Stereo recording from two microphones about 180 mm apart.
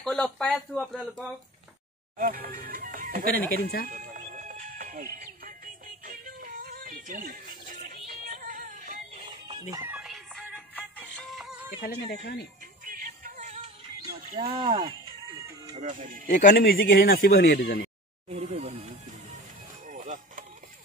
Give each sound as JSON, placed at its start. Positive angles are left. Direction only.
{"t": 0.0, "sound": "speech", "side_deg": 5}
{"t": 2.1, "sound": "speech", "side_deg": -55}
{"t": 4.4, "sound": "music", "side_deg": -45}
{"t": 9.5, "sound": "music", "side_deg": -15}
{"t": 11.8, "sound": "speech", "side_deg": 60}
{"t": 12.8, "sound": "music", "side_deg": -50}
{"t": 14.4, "sound": "speech", "side_deg": -30}
{"t": 15.7, "sound": "speech", "side_deg": -40}
{"t": 16.3, "sound": "speech", "side_deg": 50}
{"t": 18.3, "sound": "speech", "side_deg": -40}
{"t": 19.9, "sound": "a sound", "side_deg": -50}